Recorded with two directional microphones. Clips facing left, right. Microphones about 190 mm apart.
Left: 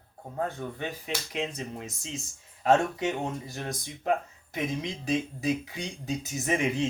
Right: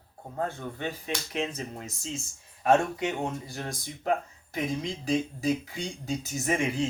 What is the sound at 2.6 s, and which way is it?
Speech, 20° left (ahead or behind).